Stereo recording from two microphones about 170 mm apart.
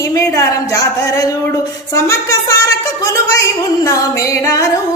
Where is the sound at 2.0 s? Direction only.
20° left (ahead or behind).